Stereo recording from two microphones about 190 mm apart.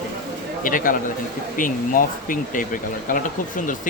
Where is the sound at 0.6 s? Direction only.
45° left (ahead or behind).